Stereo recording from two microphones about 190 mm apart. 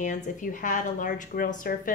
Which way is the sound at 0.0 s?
40° left (ahead or behind).